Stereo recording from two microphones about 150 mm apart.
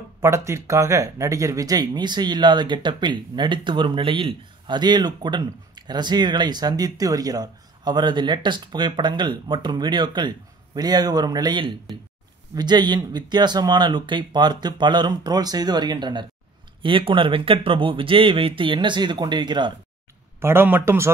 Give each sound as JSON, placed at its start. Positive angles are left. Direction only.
{"t": 0.2, "sound": "speech", "side_deg": -20}
{"t": 20.3, "sound": "speech", "side_deg": -15}